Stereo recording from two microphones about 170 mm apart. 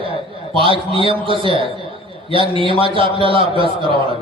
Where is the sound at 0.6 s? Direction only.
30° right (ahead or behind).